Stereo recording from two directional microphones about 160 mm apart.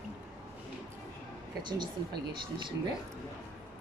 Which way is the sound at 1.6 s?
30° right (ahead or behind).